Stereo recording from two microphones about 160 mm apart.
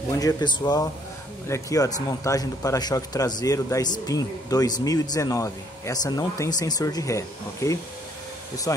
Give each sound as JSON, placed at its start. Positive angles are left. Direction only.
{"t": 0.2, "sound": "a man's voice", "side_deg": 25}